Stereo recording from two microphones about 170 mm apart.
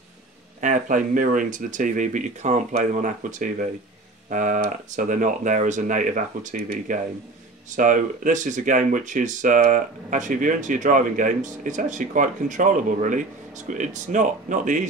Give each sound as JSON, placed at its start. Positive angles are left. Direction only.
{"t": 0.6, "sound": "speech", "side_deg": -50}